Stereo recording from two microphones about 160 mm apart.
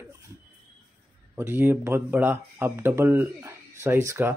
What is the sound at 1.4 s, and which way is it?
Speech, 15° right (ahead or behind).